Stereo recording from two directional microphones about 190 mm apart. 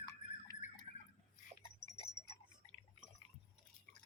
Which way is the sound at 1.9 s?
35° left (ahead or behind).